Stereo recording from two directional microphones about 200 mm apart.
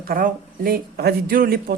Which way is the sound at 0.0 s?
45° right (ahead or behind).